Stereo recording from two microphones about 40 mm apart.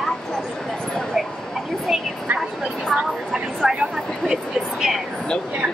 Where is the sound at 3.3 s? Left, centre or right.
Centre.